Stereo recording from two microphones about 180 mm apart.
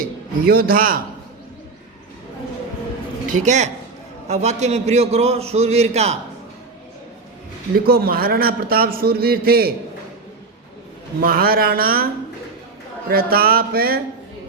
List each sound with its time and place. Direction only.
0.4 s a man's voice: 55° right (ahead or behind)
3.2 s a man's voice: 45° right (ahead or behind)
7.9 s a man's voice: 55° right (ahead or behind)
11.2 s a man's voice: 55° right (ahead or behind)
13.1 s a man's voice: 55° right (ahead or behind)